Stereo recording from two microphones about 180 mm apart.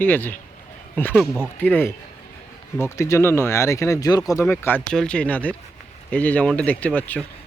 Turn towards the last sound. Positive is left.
turn(degrees=10)  # may be behind; listen again after turning